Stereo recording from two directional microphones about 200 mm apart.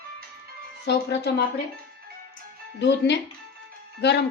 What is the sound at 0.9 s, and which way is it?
Speech, 55° left (ahead or behind).